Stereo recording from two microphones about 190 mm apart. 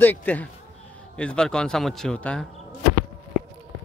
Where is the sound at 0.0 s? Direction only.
10° left (ahead or behind).